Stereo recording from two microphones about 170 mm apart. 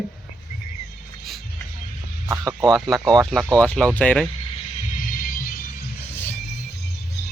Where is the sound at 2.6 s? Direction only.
Centre (ahead or behind).